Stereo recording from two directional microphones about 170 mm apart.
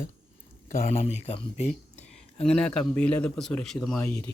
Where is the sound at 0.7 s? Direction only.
45° left (ahead or behind).